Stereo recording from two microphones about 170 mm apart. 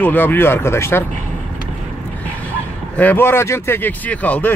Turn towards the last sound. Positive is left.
turn(degrees=10)  # may be behind; listen again after turning